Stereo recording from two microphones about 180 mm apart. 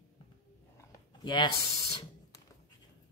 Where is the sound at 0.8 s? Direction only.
25° left (ahead or behind).